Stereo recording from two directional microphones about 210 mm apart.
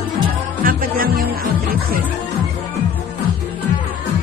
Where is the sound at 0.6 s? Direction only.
40° right (ahead or behind).